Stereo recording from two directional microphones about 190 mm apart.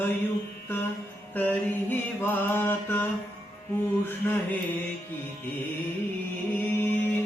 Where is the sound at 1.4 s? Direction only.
10° left (ahead or behind).